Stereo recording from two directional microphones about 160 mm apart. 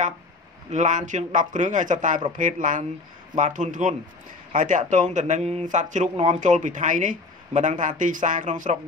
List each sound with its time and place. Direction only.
0.7 s speech: 50° right (ahead or behind)